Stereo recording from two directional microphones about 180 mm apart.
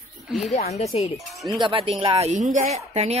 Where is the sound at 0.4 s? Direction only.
40° left (ahead or behind).